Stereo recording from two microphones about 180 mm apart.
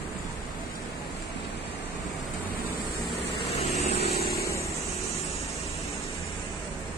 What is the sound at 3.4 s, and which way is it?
Vehicle, 35° left (ahead or behind).